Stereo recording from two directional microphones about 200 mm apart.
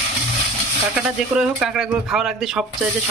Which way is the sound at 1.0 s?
5° right (ahead or behind).